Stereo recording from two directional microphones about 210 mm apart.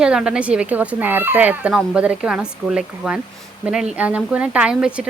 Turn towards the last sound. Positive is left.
turn(degrees=-5)  # may be behind; listen again after turning